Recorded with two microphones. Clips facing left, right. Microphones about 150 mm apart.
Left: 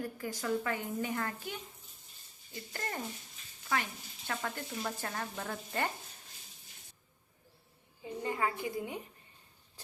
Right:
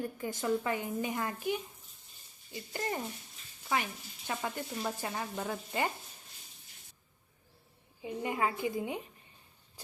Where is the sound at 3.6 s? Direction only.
15° right (ahead or behind).